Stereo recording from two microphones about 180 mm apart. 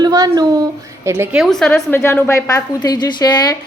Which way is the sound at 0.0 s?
20° right (ahead or behind).